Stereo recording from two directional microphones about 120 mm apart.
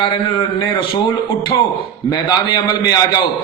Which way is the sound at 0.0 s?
40° left (ahead or behind).